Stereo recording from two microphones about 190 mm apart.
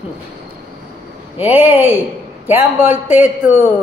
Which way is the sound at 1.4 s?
10° right (ahead or behind).